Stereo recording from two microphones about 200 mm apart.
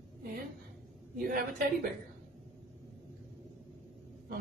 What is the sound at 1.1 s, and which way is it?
Speech, 45° right (ahead or behind).